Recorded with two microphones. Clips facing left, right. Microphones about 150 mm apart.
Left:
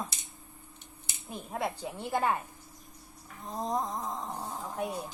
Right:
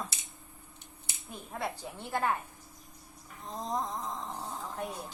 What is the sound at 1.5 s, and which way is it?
Speech, 15° left (ahead or behind).